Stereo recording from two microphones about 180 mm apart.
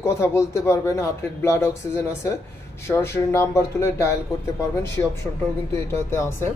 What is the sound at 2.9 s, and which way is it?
A man's voice, 15° left (ahead or behind).